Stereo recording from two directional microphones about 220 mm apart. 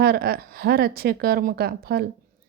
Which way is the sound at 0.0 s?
45° right (ahead or behind).